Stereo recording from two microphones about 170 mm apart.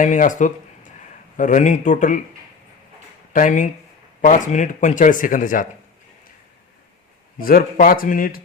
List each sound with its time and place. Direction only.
0.0 s speech: 50° left (ahead or behind)
3.3 s speech: 50° left (ahead or behind)
7.3 s speech: 55° left (ahead or behind)